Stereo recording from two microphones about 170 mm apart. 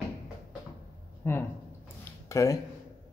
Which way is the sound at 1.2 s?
15° left (ahead or behind).